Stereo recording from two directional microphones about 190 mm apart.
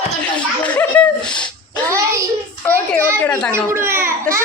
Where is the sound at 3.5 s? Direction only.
15° right (ahead or behind).